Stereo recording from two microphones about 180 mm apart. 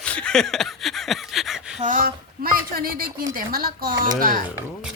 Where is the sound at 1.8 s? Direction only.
50° right (ahead or behind).